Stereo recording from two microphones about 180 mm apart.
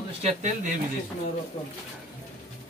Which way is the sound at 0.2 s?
35° right (ahead or behind).